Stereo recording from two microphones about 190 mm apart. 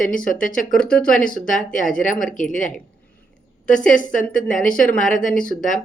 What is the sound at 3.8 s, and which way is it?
Speech, 40° left (ahead or behind).